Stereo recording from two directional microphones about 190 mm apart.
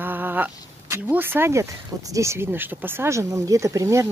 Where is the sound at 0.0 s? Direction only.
10° right (ahead or behind).